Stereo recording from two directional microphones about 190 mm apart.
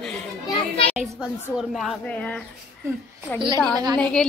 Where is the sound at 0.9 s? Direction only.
Centre (ahead or behind).